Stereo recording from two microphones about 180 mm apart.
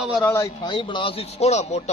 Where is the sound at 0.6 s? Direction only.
25° left (ahead or behind).